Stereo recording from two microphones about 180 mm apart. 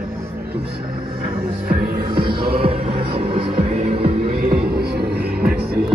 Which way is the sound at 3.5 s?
50° right (ahead or behind).